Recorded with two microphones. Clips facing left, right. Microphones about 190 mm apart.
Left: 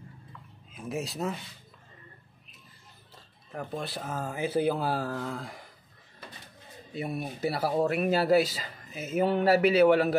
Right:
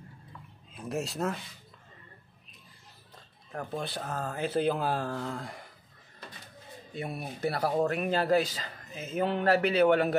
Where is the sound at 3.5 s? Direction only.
Centre (ahead or behind).